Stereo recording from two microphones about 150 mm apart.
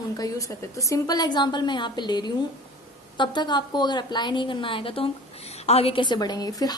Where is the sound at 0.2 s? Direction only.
20° left (ahead or behind).